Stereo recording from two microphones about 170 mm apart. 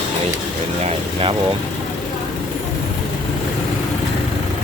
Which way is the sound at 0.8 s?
30° right (ahead or behind).